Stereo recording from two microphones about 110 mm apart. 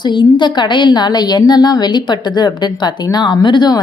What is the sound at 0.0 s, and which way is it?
A woman's voice, 45° left (ahead or behind).